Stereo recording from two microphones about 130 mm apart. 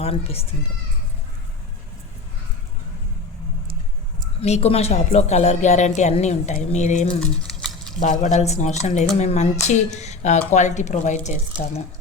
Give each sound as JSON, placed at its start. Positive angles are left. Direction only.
{"t": 0.0, "sound": "speech", "side_deg": 50}
{"t": 4.4, "sound": "speech", "side_deg": 55}
{"t": 7.2, "sound": "a sound", "side_deg": 5}
{"t": 7.9, "sound": "speech", "side_deg": 75}